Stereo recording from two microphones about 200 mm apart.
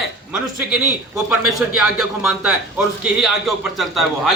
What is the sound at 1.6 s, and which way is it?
A man's voice, centre (ahead or behind).